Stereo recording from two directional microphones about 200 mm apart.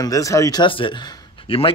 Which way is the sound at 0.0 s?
15° left (ahead or behind).